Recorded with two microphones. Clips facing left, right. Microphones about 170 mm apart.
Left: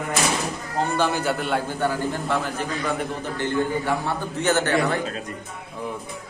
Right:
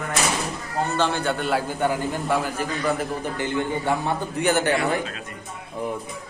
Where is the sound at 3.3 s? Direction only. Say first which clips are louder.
Left 4 dB; 15° right (ahead or behind).